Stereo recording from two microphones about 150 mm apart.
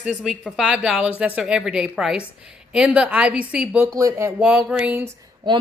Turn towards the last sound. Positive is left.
turn(degrees=-30)  # may be behind; listen again after turning